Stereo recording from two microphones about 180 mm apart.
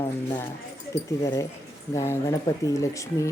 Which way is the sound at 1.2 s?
15° left (ahead or behind).